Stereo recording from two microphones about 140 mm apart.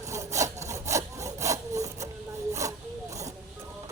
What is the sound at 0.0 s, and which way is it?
Sawing, 20° right (ahead or behind).